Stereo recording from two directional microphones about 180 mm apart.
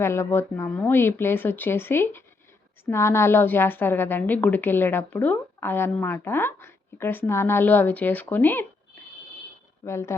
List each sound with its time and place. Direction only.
0.0 s a woman's voice: 15° left (ahead or behind)
9.8 s a woman's voice: 15° left (ahead or behind)